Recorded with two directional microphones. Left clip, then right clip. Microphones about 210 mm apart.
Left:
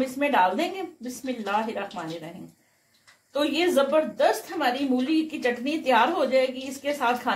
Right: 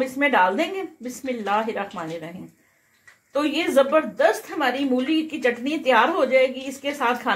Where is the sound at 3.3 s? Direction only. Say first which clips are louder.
Right 3 dB; 40° right (ahead or behind).